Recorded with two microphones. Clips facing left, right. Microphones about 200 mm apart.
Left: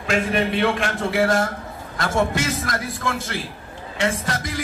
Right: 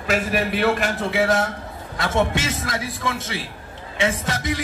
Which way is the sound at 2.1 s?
25° right (ahead or behind).